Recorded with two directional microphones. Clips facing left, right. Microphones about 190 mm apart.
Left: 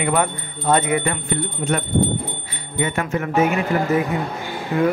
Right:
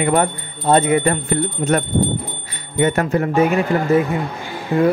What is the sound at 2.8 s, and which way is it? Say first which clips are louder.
Speech: right 6 dB; 40° right (ahead or behind).